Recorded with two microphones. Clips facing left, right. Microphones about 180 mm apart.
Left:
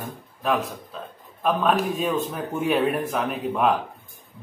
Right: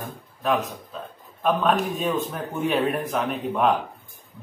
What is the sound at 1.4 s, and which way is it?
Speech, centre (ahead or behind).